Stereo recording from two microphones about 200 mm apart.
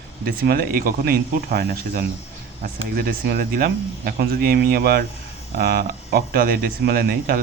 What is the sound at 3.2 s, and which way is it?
A man's voice, 50° right (ahead or behind).